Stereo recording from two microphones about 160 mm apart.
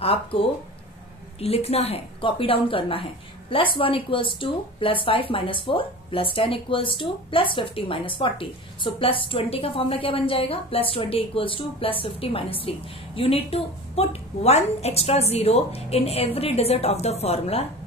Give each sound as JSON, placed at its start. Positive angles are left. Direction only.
{"t": 0.0, "sound": "a woman's voice", "side_deg": 35}